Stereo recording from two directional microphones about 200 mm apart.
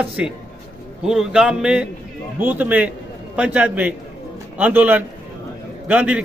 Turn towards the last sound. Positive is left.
turn(degrees=-5)  # may be behind; listen again after turning